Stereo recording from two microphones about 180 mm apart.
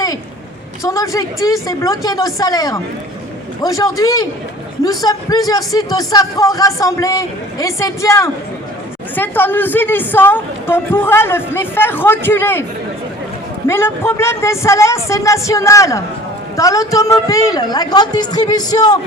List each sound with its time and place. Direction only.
0.8 s a woman's voice: 15° left (ahead or behind)
13.7 s a woman's voice: 15° left (ahead or behind)